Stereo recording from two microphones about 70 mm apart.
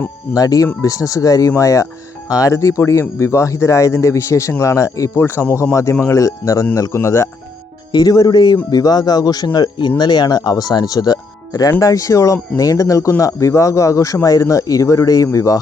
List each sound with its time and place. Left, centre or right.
0.3 s speech: left
5.1 s speech: left
5.7 s speech: left
7.9 s speech: left
8.7 s speech: left
11.8 s speech: left